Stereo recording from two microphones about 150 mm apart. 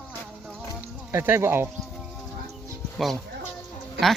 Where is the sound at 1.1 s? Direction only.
15° right (ahead or behind).